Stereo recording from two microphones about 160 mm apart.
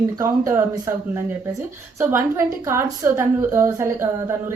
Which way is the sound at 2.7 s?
15° right (ahead or behind).